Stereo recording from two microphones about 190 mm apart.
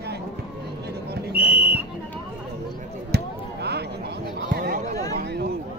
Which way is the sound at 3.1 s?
60° right (ahead or behind).